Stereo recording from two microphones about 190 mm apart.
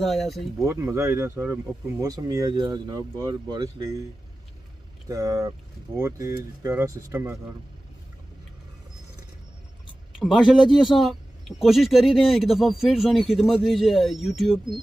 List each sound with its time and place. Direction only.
0.0 s speech: centre (ahead or behind)
0.7 s speech: 15° right (ahead or behind)
5.0 s speech: 15° right (ahead or behind)
10.1 s speech: centre (ahead or behind)
10.7 s speech: 25° left (ahead or behind)
11.0 s speech: centre (ahead or behind)